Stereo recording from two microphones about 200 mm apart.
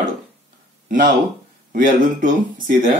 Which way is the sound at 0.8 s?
40° right (ahead or behind).